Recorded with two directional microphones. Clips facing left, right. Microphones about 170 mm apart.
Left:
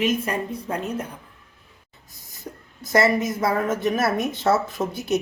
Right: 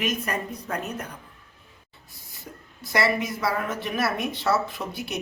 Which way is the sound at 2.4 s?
45° left (ahead or behind).